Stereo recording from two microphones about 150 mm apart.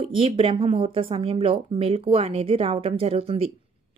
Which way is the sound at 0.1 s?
35° right (ahead or behind).